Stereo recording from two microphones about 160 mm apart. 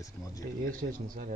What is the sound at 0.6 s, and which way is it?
Speech, 60° right (ahead or behind).